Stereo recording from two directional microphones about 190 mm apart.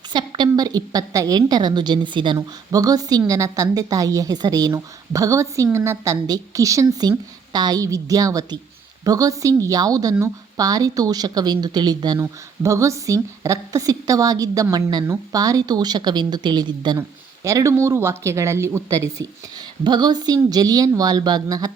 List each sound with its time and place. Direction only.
0.1 s a woman's voice: 25° right (ahead or behind)